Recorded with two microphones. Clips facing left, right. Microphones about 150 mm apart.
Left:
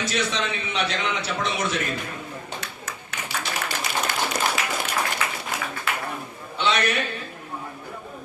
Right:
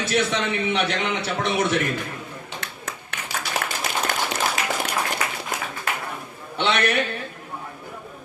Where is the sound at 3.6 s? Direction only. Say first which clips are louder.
Right 1 dB; 60° right (ahead or behind).